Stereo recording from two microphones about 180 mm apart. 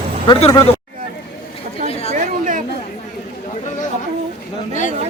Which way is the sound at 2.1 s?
45° right (ahead or behind).